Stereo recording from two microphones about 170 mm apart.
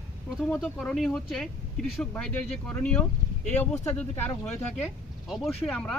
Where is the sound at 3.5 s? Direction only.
40° left (ahead or behind).